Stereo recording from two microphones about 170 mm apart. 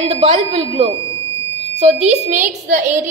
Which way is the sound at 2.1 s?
45° right (ahead or behind).